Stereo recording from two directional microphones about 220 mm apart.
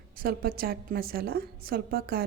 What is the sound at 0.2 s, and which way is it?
A woman's voice, 40° right (ahead or behind).